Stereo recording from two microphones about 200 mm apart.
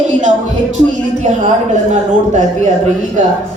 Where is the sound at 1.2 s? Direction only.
35° right (ahead or behind).